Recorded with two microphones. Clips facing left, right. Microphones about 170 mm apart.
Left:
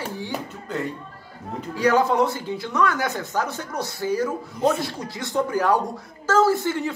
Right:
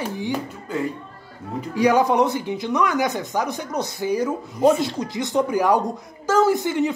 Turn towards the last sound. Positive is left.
turn(degrees=-15)  # may be behind; listen again after turning